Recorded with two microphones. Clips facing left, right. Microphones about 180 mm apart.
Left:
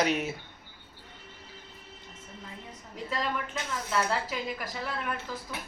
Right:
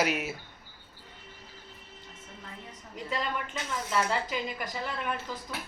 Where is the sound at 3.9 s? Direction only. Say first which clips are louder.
Even; centre (ahead or behind).